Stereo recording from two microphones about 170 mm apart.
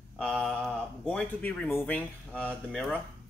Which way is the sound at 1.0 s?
10° left (ahead or behind).